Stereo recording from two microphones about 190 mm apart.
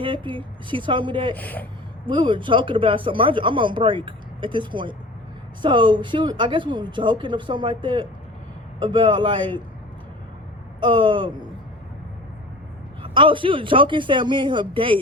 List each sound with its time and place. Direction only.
0.0 s speech: 25° right (ahead or behind)
1.3 s speech: 10° left (ahead or behind)
2.0 s speech: 25° right (ahead or behind)
10.8 s speech: 25° right (ahead or behind)
13.0 s speech: 25° right (ahead or behind)